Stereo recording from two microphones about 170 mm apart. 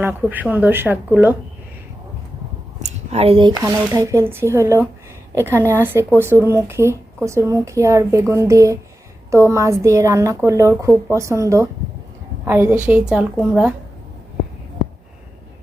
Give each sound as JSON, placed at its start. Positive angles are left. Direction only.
{"t": 0.0, "sound": "speech", "side_deg": -10}
{"t": 2.8, "sound": "speech", "side_deg": -40}
{"t": 13.1, "sound": "a woman's voice", "side_deg": 0}